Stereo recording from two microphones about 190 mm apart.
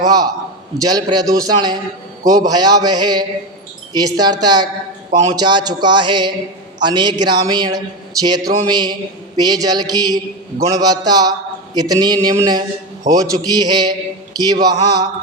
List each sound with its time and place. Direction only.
0.0 s a man's voice: 20° right (ahead or behind)